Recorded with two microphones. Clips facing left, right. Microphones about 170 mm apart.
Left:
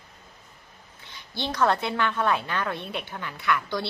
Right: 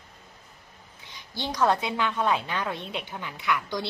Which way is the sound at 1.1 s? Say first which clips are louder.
Left 1 dB; 15° right (ahead or behind).